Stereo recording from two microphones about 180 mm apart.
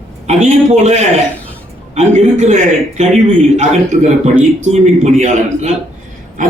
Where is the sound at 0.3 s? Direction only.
40° right (ahead or behind).